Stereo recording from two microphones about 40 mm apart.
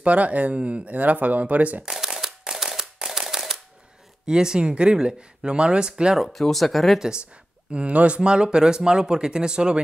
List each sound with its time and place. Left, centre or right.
0.0 s speech: right
1.8 s shuffling cards: centre
4.3 s speech: centre
6.1 s speech: centre
7.0 s speech: right
7.7 s speech: right